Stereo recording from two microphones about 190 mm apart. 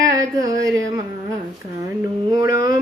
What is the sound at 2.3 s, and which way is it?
Mantra, 20° right (ahead or behind).